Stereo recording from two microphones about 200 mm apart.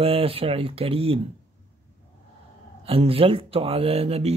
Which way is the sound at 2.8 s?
30° right (ahead or behind).